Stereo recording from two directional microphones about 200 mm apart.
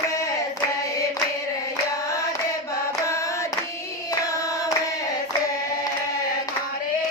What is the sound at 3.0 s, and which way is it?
Hands, 15° left (ahead or behind).